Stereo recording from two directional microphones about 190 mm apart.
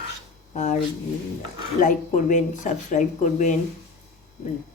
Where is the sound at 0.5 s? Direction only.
40° left (ahead or behind).